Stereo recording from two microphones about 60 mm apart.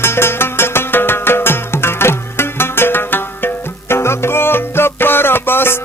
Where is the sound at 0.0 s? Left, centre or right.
Left.